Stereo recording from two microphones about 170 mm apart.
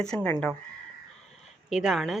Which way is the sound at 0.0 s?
10° left (ahead or behind).